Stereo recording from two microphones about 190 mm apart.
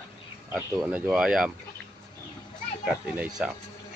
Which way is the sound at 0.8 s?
5° right (ahead or behind).